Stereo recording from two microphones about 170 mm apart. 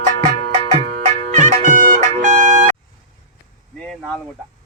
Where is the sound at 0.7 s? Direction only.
40° right (ahead or behind).